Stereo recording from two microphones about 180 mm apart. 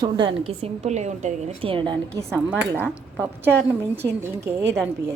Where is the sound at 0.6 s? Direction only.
40° right (ahead or behind).